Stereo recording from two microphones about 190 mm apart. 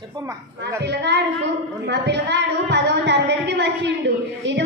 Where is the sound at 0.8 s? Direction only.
65° right (ahead or behind).